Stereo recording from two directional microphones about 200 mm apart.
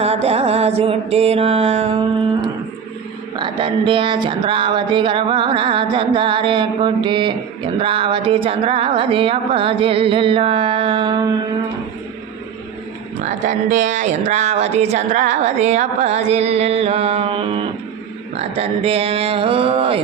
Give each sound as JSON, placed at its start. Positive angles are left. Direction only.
{"t": 0.0, "sound": "music", "side_deg": -30}
{"t": 3.3, "sound": "speech", "side_deg": -25}
{"t": 13.2, "sound": "speech", "side_deg": -40}